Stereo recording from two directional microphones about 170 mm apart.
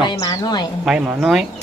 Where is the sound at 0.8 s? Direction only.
5° right (ahead or behind).